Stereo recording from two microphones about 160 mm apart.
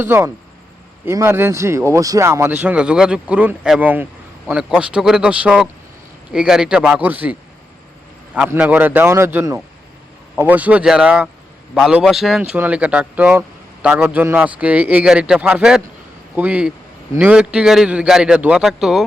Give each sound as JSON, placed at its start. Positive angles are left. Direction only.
{"t": 0.0, "sound": "a man's voice", "side_deg": -15}
{"t": 2.6, "sound": "a man's voice", "side_deg": -5}
{"t": 8.4, "sound": "a man's voice", "side_deg": -10}